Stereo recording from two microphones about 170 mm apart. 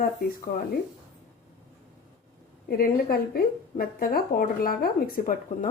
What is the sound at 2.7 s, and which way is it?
Speech, 60° left (ahead or behind).